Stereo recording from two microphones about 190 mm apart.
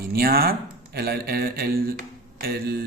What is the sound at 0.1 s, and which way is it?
A man's voice, 50° right (ahead or behind).